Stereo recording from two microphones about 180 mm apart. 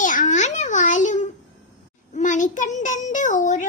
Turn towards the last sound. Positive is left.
turn(degrees=45)  # may be behind; listen again after turning